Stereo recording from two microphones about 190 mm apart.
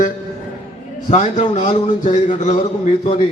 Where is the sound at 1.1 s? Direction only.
35° left (ahead or behind).